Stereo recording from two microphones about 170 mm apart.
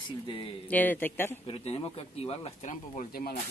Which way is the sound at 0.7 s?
10° left (ahead or behind).